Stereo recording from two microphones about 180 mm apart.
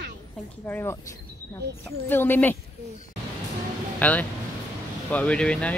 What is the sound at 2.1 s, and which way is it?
Speech, 10° left (ahead or behind).